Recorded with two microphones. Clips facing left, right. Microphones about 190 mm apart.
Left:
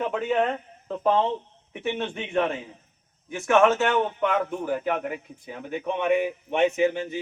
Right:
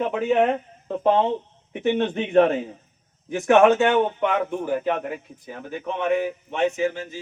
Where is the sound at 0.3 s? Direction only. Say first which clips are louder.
Right 4 dB; 10° right (ahead or behind).